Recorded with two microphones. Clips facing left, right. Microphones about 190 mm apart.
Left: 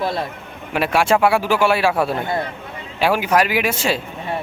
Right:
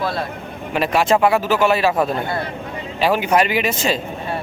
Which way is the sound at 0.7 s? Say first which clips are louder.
Even; 10° left (ahead or behind).